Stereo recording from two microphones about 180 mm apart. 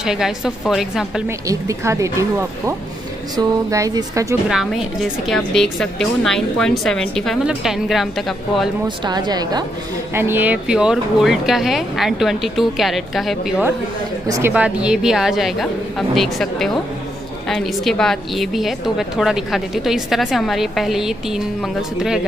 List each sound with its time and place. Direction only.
0.0 s a woman's voice: 5° right (ahead or behind)
1.5 s speech: 15° right (ahead or behind)
5.3 s a woman's voice: centre (ahead or behind)
8.8 s speech: 25° right (ahead or behind)
10.1 s a woman's voice: 10° right (ahead or behind)
14.2 s speech: 20° right (ahead or behind)
14.5 s a woman's voice: 5° right (ahead or behind)